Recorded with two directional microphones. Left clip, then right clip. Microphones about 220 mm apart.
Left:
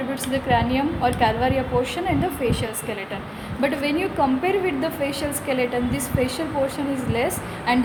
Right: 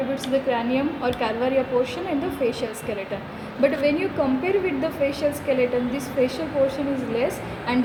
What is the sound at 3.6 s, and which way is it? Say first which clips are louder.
A woman's voice: right 2 dB; 35° left (ahead or behind).